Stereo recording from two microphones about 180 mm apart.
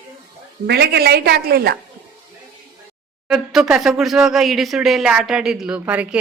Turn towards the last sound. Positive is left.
turn(degrees=-5)  # may be behind; listen again after turning